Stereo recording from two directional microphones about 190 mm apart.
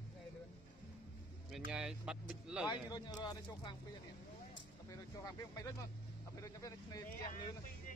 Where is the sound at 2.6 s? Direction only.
20° left (ahead or behind).